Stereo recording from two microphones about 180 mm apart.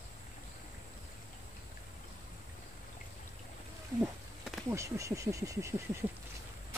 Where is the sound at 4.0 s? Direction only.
Centre (ahead or behind).